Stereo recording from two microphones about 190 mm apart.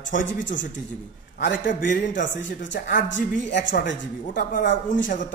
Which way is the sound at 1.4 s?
45° left (ahead or behind).